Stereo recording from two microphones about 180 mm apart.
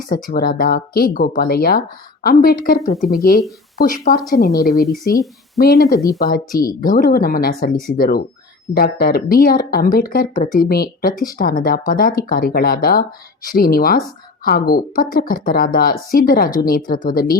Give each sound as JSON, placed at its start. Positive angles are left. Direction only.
{"t": 0.1, "sound": "a woman's voice", "side_deg": 55}
{"t": 4.3, "sound": "a woman's voice", "side_deg": 60}